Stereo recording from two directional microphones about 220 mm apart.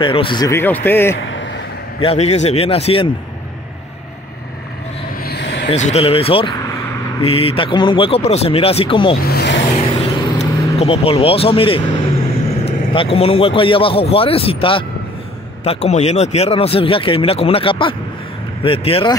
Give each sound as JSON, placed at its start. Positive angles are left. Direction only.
{"t": 0.0, "sound": "a man's voice", "side_deg": 25}
{"t": 1.1, "sound": "speech", "side_deg": 55}
{"t": 2.0, "sound": "speech", "side_deg": 30}
{"t": 5.2, "sound": "vehicle", "side_deg": 50}
{"t": 5.7, "sound": "speech", "side_deg": 30}
{"t": 9.2, "sound": "speech", "side_deg": 50}
{"t": 10.0, "sound": "vehicle", "side_deg": 25}
{"t": 12.6, "sound": "speech", "side_deg": 25}